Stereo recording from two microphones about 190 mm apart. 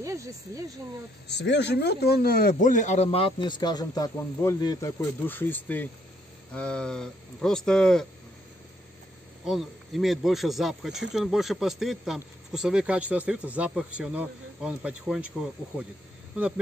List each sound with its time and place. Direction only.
0.0 s speech: 15° right (ahead or behind)
1.2 s speech: 65° left (ahead or behind); by 8.1 s 5° left (ahead or behind)
9.5 s speech: centre (ahead or behind)